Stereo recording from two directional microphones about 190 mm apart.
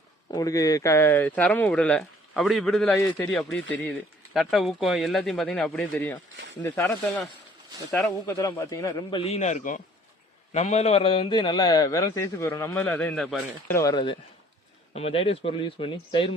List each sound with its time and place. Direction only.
0.3 s speech: 20° left (ahead or behind)
8.3 s a man's voice: 20° left (ahead or behind)
13.9 s a man's voice: 25° left (ahead or behind)